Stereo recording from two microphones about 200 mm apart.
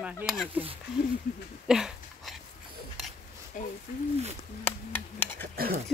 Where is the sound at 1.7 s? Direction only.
Centre (ahead or behind).